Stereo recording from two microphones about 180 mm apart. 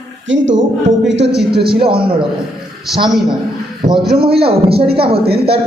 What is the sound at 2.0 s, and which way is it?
Speech, 30° right (ahead or behind).